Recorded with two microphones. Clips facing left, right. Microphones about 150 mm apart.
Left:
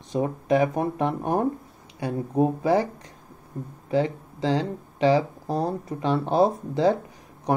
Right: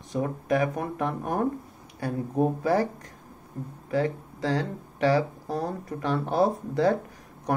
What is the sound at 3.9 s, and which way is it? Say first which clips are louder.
Speech: left 2 dB; 25° left (ahead or behind).